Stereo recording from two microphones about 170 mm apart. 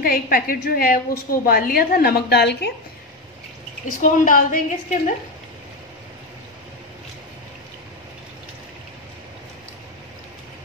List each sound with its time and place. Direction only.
0.0 s a woman's voice: 60° left (ahead or behind); by 2.7 s 75° left (ahead or behind)
4.0 s a woman's voice: 50° left (ahead or behind)